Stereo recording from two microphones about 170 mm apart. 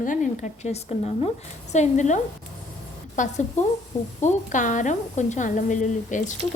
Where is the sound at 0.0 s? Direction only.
50° left (ahead or behind).